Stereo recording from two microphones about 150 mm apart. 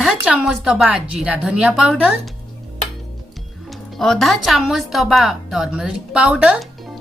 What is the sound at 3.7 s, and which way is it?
Speech, centre (ahead or behind).